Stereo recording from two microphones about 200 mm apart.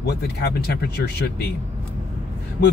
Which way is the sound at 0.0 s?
55° left (ahead or behind).